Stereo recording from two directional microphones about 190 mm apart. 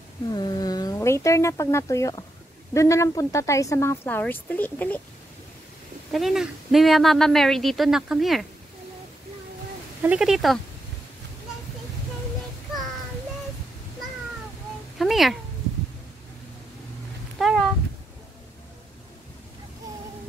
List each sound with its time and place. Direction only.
0.3 s a woman's voice: 20° left (ahead or behind)
6.1 s a woman's voice: centre (ahead or behind)
10.0 s a woman's voice: 5° right (ahead or behind)
15.0 s a sound: centre (ahead or behind)
17.4 s cat: centre (ahead or behind)